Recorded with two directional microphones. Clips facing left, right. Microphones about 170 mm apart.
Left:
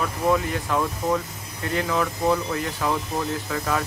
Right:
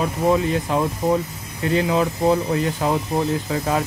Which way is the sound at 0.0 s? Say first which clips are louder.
Right 4 dB; 25° right (ahead or behind).